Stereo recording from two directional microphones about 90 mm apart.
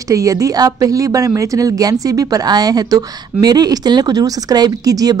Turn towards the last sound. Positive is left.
turn(degrees=-45)  # may be behind; listen again after turning